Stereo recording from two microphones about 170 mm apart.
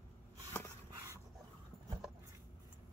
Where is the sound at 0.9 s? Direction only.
15° right (ahead or behind).